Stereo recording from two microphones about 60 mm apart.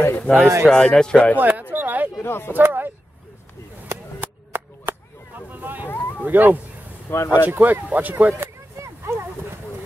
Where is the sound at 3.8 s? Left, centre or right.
Right.